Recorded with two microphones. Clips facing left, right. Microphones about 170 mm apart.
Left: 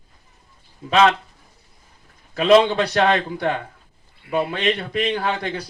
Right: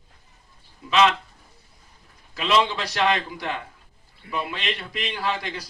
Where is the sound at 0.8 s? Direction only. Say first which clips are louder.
Left 3 dB; 50° left (ahead or behind).